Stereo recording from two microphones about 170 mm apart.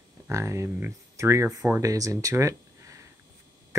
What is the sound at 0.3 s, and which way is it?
Speech, 15° right (ahead or behind).